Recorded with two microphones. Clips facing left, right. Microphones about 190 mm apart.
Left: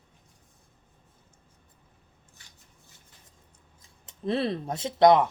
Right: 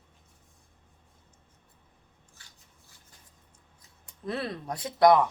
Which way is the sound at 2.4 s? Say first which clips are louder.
Right 1 dB; 20° left (ahead or behind).